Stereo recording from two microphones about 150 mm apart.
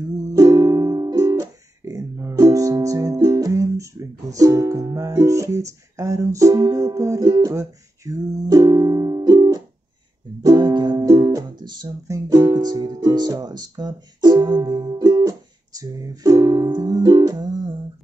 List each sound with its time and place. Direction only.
0.3 s music: 20° right (ahead or behind)